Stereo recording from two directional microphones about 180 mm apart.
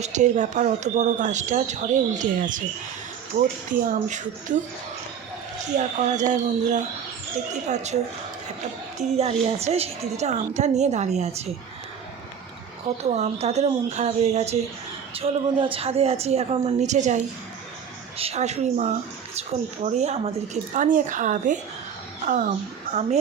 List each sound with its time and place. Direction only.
0.0 s speech: 40° right (ahead or behind)
5.7 s a woman's voice: 40° right (ahead or behind)
7.9 s a woman's voice: 45° right (ahead or behind)
13.0 s a woman's voice: 40° right (ahead or behind)
18.2 s a woman's voice: 35° right (ahead or behind)